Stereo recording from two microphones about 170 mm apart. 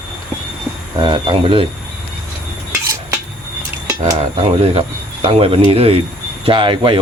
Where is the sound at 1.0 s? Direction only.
30° right (ahead or behind).